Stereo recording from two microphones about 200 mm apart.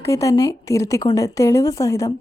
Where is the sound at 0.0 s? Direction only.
15° left (ahead or behind).